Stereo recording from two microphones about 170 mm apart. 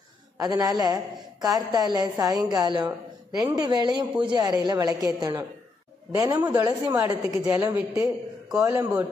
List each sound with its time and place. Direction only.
0.4 s a woman's voice: 20° right (ahead or behind)
8.5 s a man's voice: 5° right (ahead or behind)